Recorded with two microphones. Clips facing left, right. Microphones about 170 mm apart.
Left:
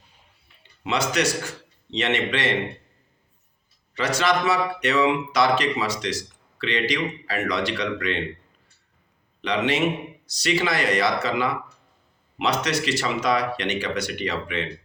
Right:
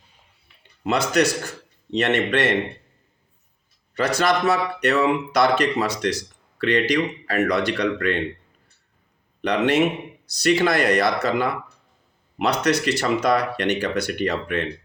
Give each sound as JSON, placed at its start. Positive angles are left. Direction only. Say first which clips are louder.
{"t": 0.9, "sound": "speech", "louder": "right 4 dB", "side_deg": -55}
{"t": 3.9, "sound": "speech", "louder": "right 2 dB", "side_deg": -55}
{"t": 9.5, "sound": "speech", "louder": "right 3 dB", "side_deg": -60}